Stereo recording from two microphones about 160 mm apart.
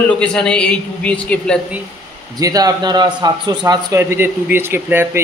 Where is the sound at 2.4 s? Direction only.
20° right (ahead or behind).